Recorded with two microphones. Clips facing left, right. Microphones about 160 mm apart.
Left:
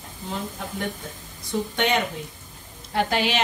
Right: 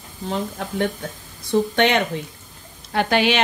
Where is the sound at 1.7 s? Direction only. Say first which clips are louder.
Right 5 dB; 75° right (ahead or behind).